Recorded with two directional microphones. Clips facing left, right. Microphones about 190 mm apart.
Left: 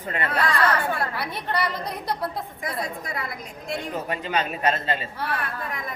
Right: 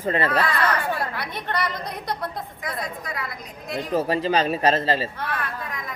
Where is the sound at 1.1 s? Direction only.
5° left (ahead or behind).